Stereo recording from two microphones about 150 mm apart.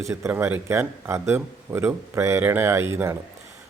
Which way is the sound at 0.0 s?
20° right (ahead or behind).